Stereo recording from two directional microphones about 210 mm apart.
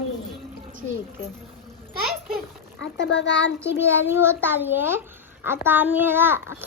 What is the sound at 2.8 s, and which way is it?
Speech, 60° left (ahead or behind).